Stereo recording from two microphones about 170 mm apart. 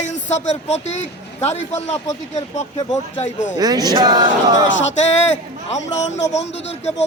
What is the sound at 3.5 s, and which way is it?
Speech, 20° right (ahead or behind).